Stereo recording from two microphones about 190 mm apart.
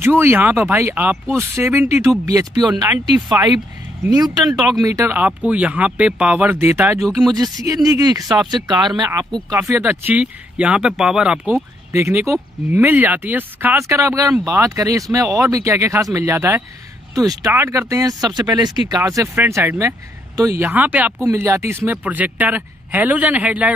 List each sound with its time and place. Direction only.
0.0 s speech: 10° right (ahead or behind)
4.5 s speech: centre (ahead or behind)
4.8 s speech: 15° right (ahead or behind)
7.0 s speech: centre (ahead or behind)
7.5 s speech: 20° right (ahead or behind)